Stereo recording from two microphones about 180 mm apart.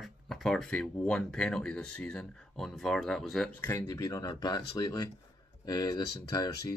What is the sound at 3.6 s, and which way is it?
Speech, 15° left (ahead or behind).